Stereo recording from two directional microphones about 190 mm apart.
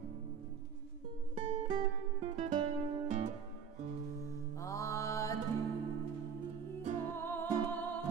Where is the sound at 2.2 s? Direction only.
35° right (ahead or behind).